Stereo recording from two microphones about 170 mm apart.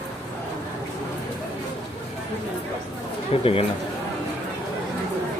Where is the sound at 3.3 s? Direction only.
35° left (ahead or behind).